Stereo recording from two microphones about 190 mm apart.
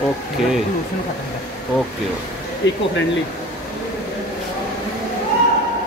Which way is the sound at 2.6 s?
70° left (ahead or behind).